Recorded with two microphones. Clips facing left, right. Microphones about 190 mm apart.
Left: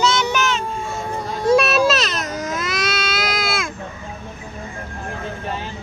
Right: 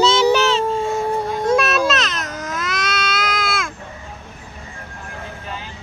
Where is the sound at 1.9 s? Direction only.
5° left (ahead or behind).